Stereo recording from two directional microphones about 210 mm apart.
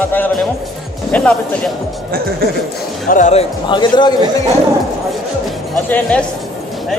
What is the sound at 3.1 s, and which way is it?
A man's voice, 35° left (ahead or behind).